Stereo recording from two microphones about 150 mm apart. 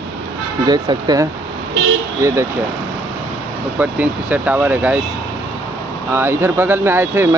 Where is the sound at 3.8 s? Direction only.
10° right (ahead or behind).